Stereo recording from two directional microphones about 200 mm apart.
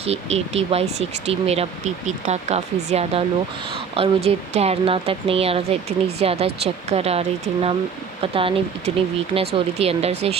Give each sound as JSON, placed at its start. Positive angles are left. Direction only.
{"t": 0.0, "sound": "speech", "side_deg": -30}